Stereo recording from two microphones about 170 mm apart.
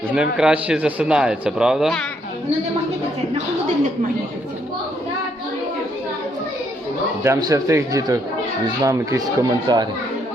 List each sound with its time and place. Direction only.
0.1 s speech: 5° right (ahead or behind)
7.3 s speech: 20° right (ahead or behind)